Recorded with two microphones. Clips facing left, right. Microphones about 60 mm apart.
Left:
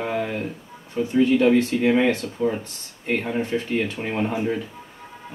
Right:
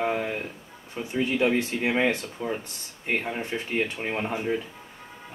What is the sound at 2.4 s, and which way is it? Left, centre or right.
Speech, centre.